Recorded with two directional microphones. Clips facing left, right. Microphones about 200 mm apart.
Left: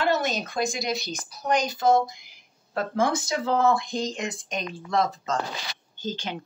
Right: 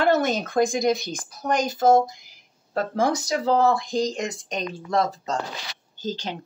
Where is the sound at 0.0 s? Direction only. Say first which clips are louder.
Right 4 dB; 50° right (ahead or behind).